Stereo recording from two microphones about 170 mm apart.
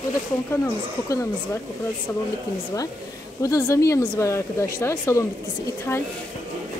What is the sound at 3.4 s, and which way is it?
Speech, 15° left (ahead or behind).